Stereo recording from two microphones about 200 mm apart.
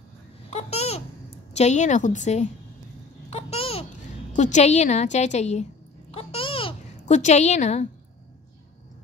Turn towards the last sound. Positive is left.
turn(degrees=35)  # may be behind; listen again after turning